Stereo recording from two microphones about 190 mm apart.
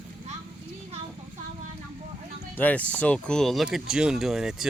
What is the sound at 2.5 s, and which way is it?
Speech, 10° left (ahead or behind).